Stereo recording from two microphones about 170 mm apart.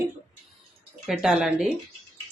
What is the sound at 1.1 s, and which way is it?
Speech, centre (ahead or behind).